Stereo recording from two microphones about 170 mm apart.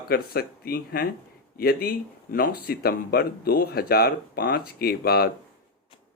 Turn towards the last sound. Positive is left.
turn(degrees=65)  # may be behind; listen again after turning